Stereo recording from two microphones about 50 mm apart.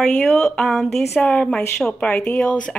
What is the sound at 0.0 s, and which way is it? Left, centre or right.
Speech, centre.